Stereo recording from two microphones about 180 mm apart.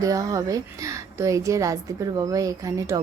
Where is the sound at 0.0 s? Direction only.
20° right (ahead or behind).